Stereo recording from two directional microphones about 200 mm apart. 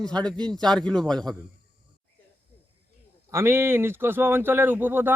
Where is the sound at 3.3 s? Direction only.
10° right (ahead or behind).